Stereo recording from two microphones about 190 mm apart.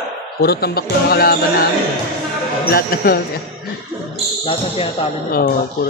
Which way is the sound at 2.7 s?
50° left (ahead or behind).